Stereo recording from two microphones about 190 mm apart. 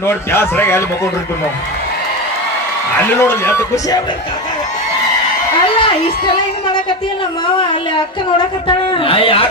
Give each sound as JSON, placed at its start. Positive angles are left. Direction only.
{"t": 0.1, "sound": "speech", "side_deg": 10}
{"t": 3.2, "sound": "speech", "side_deg": 15}
{"t": 8.4, "sound": "a woman's voice", "side_deg": 25}